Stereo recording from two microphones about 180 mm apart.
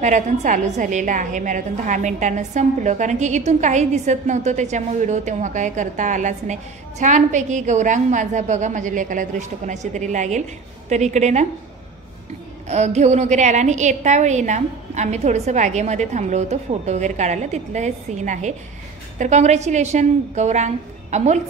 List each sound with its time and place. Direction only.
0.0 s a woman's voice: 40° right (ahead or behind)
12.6 s a woman's voice: 40° right (ahead or behind)